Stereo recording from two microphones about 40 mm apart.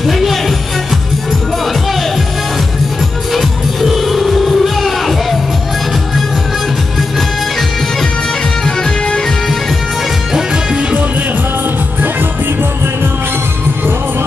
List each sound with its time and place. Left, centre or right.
0.0 s music: centre
3.3 s music: centre
8.6 s music: centre
10.3 s music: centre